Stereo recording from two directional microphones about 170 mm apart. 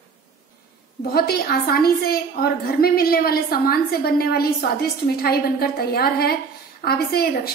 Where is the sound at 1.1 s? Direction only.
65° left (ahead or behind).